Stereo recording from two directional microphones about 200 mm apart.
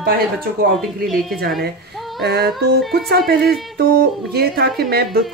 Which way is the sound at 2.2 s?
55° right (ahead or behind).